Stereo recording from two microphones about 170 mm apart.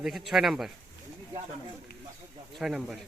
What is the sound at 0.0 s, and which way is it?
Speech, centre (ahead or behind).